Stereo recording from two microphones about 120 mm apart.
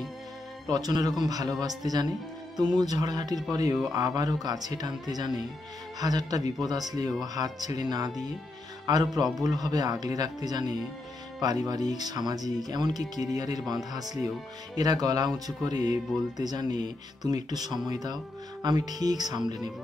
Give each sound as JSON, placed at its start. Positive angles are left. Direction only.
{"t": 0.7, "sound": "speech", "side_deg": -35}
{"t": 14.8, "sound": "speech", "side_deg": -30}